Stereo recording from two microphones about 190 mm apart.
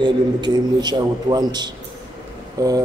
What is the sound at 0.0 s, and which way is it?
A man's voice, 20° right (ahead or behind).